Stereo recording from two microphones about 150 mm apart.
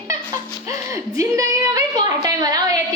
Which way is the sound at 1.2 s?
20° right (ahead or behind).